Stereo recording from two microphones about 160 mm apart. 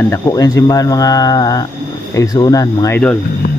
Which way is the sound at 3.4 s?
50° left (ahead or behind).